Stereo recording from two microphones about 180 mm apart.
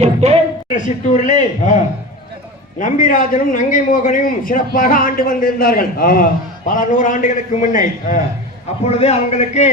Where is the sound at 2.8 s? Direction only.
45° left (ahead or behind).